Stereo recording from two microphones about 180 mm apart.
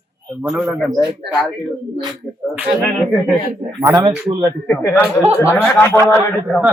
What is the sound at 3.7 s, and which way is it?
Speech, 20° right (ahead or behind).